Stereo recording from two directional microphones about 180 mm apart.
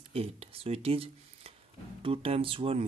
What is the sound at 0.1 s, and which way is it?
Speech, 35° right (ahead or behind).